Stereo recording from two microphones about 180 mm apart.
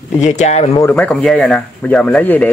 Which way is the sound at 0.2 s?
40° left (ahead or behind).